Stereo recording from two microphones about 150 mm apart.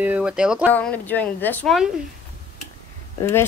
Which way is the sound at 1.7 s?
5° right (ahead or behind).